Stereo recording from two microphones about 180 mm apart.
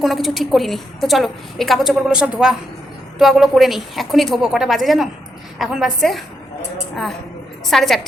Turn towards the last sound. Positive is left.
turn(degrees=0)  # may be behind; listen again after turning